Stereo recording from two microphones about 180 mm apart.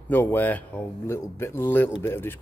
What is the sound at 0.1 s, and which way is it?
A man's voice, 10° left (ahead or behind).